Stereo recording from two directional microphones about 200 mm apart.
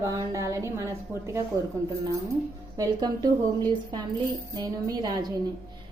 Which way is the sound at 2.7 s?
20° right (ahead or behind).